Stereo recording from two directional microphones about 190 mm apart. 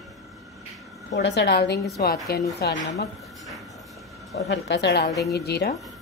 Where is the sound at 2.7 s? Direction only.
35° left (ahead or behind).